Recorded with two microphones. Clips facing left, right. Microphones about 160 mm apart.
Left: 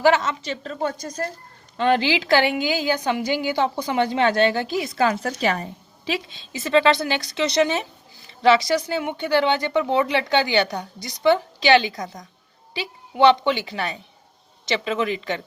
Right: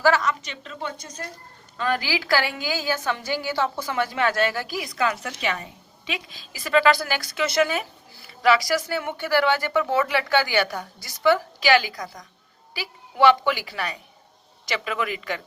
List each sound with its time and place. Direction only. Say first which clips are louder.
0.0 s a woman's voice: left 2 dB; 20° left (ahead or behind); by 1.2 s 40° left (ahead or behind)
1.7 s a woman's voice: left 6 dB; 30° left (ahead or behind)